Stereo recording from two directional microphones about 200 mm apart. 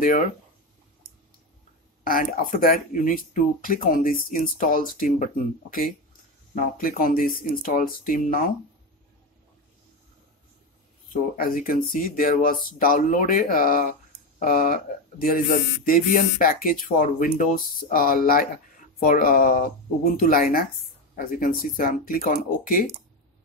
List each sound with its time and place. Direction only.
2.0 s speech: 45° left (ahead or behind)
11.3 s speech: 45° left (ahead or behind)